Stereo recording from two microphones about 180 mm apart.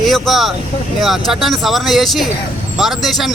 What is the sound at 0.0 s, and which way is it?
Speech, centre (ahead or behind).